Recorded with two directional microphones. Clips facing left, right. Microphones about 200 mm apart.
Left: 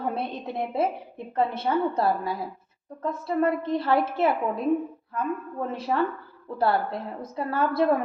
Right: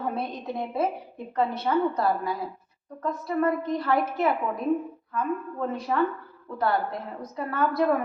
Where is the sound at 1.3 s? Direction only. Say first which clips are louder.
Even; 25° left (ahead or behind).